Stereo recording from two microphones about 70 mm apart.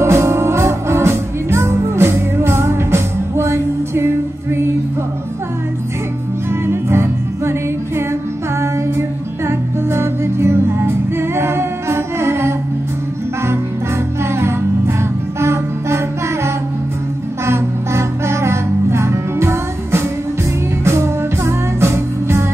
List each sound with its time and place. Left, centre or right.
0.0 s music: right
6.6 s music: right
9.5 s music: right
14.3 s music: right
17.5 s music: right